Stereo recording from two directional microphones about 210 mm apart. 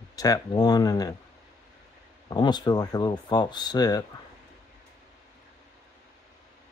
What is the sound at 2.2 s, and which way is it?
Speech, 20° left (ahead or behind).